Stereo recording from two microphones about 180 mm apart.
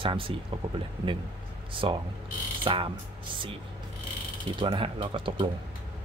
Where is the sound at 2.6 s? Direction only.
30° right (ahead or behind).